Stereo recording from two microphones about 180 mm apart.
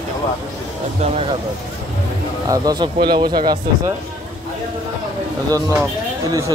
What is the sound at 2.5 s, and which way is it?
A man's voice, 20° right (ahead or behind).